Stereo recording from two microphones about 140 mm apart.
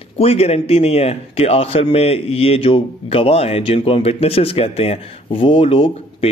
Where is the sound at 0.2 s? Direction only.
45° left (ahead or behind).